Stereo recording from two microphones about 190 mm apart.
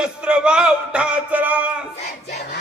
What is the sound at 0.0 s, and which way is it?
Speech, 5° right (ahead or behind).